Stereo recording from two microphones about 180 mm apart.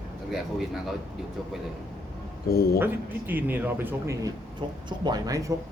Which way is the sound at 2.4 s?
60° left (ahead or behind).